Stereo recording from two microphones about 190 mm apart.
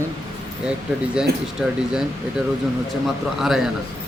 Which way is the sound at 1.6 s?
Centre (ahead or behind).